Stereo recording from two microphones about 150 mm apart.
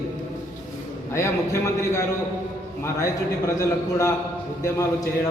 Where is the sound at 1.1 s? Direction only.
20° left (ahead or behind).